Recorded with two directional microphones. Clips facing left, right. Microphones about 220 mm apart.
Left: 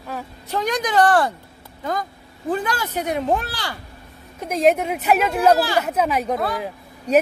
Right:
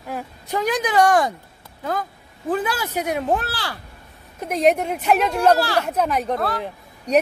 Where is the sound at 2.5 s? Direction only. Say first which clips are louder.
Right 1 dB; 5° right (ahead or behind).